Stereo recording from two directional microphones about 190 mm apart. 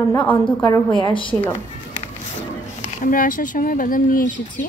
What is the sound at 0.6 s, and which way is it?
Speech, 25° left (ahead or behind).